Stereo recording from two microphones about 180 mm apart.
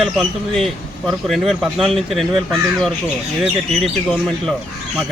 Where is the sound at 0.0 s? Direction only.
Centre (ahead or behind).